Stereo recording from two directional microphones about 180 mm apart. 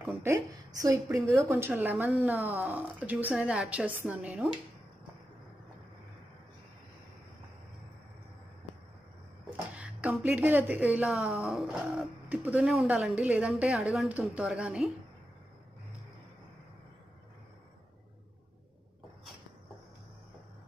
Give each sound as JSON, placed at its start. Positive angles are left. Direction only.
{"t": 0.2, "sound": "a woman's voice", "side_deg": -15}
{"t": 9.8, "sound": "a woman's voice", "side_deg": -5}